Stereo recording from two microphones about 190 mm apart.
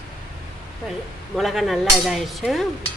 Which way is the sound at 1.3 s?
Centre (ahead or behind).